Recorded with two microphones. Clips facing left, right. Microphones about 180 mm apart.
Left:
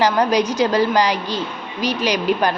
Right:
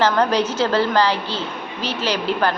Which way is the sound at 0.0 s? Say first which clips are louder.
Left 1 dB; 15° left (ahead or behind).